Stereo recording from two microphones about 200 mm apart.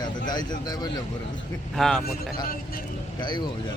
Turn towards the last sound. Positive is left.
turn(degrees=20)  # may be behind; listen again after turning